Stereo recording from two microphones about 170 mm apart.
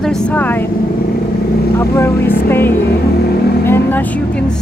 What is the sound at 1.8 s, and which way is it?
Speech, 15° left (ahead or behind).